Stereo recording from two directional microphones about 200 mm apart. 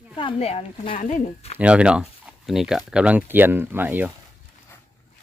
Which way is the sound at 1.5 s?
5° right (ahead or behind).